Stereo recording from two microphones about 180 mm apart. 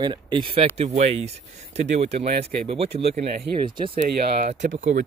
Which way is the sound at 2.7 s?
35° right (ahead or behind).